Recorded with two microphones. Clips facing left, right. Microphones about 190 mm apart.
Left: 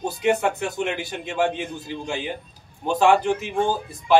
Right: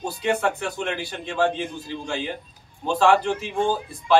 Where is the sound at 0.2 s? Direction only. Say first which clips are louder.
Left 2 dB; 15° left (ahead or behind).